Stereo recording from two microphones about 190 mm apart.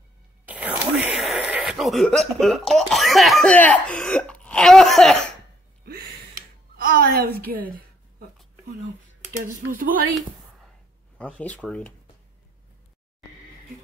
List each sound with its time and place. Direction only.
0.5 s a sound: 5° right (ahead or behind)
6.8 s a woman's voice: 50° right (ahead or behind)
9.5 s speech: 45° right (ahead or behind)
11.1 s speech: 5° left (ahead or behind)